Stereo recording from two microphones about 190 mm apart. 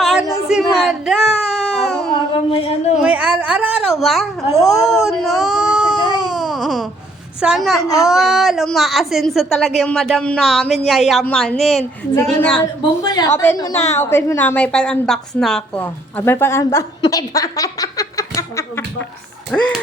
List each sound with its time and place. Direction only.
0.0 s a sound: centre (ahead or behind)
2.3 s a sound: 30° left (ahead or behind)
3.0 s a woman's voice: 5° right (ahead or behind)
6.0 s baby cry: 20° right (ahead or behind)
6.3 s baby cry: centre (ahead or behind)
7.4 s a woman's voice: centre (ahead or behind)
13.0 s a woman's voice: 20° left (ahead or behind)
19.5 s a woman's voice: 5° left (ahead or behind)